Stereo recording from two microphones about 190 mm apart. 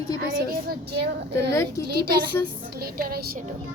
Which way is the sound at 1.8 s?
55° right (ahead or behind).